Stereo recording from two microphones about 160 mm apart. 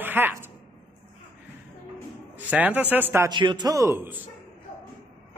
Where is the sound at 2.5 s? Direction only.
10° right (ahead or behind).